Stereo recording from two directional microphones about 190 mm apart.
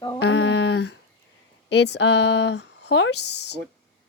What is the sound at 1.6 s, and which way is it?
Speech, 65° left (ahead or behind).